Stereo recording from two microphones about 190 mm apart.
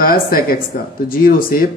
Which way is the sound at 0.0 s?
50° left (ahead or behind).